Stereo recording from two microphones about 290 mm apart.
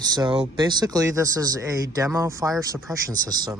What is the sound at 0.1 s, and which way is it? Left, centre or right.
Speech, centre.